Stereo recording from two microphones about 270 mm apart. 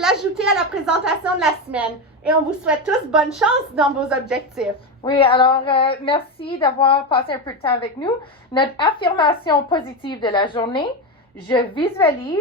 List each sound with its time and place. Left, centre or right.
0.0 s a woman's voice: centre
5.0 s female singing: centre
8.5 s a woman's voice: centre